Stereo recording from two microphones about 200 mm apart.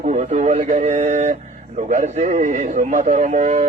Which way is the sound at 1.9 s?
40° right (ahead or behind).